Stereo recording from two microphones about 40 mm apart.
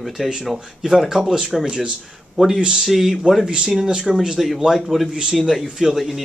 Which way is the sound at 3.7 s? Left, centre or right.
Centre.